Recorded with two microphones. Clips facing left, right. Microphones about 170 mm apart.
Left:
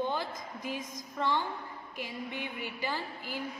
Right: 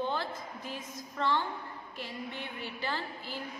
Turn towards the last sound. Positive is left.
turn(degrees=10)  # may be behind; listen again after turning